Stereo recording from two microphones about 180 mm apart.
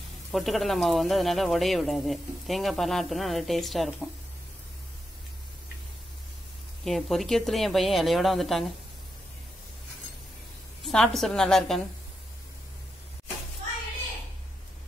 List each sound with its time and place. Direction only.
0.3 s speech: centre (ahead or behind)
6.8 s speech: centre (ahead or behind)
10.8 s speech: centre (ahead or behind)